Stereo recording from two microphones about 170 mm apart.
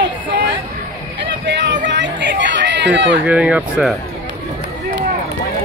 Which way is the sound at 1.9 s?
90° right.